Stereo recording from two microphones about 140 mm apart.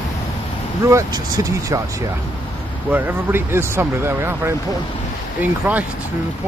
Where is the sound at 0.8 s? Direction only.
25° right (ahead or behind).